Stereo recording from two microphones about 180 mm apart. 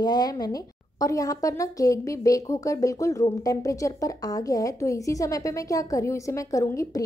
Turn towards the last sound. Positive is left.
turn(degrees=20)  # may be behind; listen again after turning